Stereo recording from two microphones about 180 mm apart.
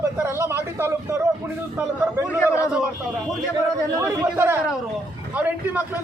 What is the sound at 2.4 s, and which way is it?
Speech, 15° left (ahead or behind).